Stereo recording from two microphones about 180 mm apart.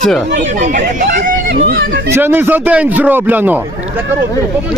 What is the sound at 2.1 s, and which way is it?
Speech, 10° right (ahead or behind).